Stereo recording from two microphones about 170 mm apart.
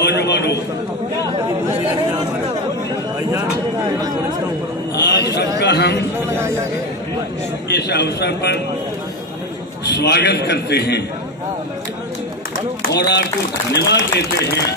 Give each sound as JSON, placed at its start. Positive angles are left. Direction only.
{"t": 0.0, "sound": "a sound", "side_deg": 85}
{"t": 5.0, "sound": "a sound", "side_deg": 80}
{"t": 5.6, "sound": "a man's voice", "side_deg": 90}
{"t": 6.1, "sound": "a man's voice", "side_deg": -15}
{"t": 7.7, "sound": "a man's voice", "side_deg": 80}
{"t": 9.9, "sound": "a man's voice", "side_deg": 85}
{"t": 12.9, "sound": "a man's voice", "side_deg": 80}